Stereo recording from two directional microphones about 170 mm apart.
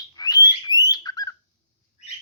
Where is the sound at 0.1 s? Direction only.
25° left (ahead or behind).